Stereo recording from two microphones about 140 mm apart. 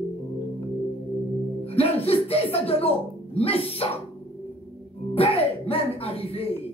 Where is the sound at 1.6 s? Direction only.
45° left (ahead or behind).